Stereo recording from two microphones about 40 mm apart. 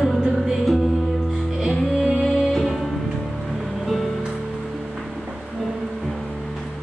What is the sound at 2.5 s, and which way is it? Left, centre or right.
Music, centre.